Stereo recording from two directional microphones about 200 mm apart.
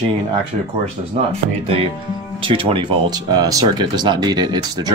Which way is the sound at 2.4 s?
25° right (ahead or behind).